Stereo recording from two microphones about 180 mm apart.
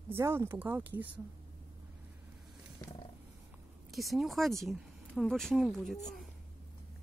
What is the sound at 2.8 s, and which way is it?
Wild animals, 20° left (ahead or behind).